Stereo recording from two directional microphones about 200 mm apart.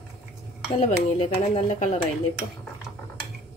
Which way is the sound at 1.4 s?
35° left (ahead or behind).